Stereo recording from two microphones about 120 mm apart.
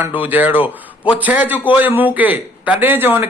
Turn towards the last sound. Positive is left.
turn(degrees=-15)  # may be behind; listen again after turning